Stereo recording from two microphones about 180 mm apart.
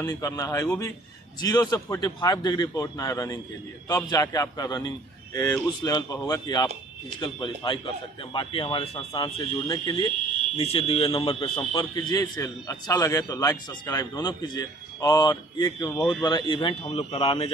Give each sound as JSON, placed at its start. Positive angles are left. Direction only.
{"t": 0.1, "sound": "a man's voice", "side_deg": 20}